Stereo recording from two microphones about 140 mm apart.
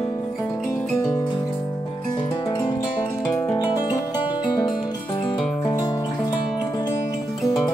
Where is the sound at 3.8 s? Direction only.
30° left (ahead or behind).